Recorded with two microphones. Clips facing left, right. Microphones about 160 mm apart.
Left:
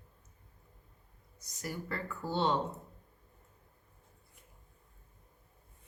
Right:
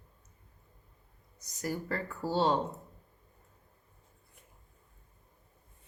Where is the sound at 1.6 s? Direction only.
40° right (ahead or behind).